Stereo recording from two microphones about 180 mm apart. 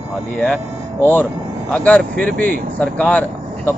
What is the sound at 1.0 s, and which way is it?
Speech, 10° left (ahead or behind).